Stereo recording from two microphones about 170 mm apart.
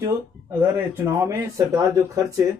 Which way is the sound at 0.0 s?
15° right (ahead or behind).